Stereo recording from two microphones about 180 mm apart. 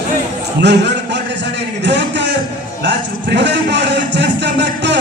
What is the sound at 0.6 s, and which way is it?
A man's voice, 75° right (ahead or behind).